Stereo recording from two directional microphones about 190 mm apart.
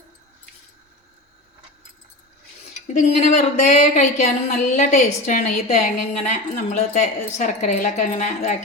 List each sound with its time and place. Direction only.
2.8 s a woman's voice: 40° left (ahead or behind)